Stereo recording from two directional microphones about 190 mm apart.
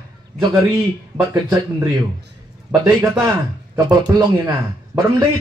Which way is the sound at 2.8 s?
15° right (ahead or behind).